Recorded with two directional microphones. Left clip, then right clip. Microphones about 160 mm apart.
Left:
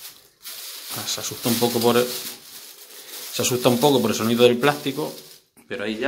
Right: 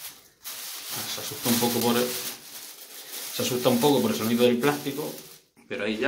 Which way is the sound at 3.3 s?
45° left (ahead or behind).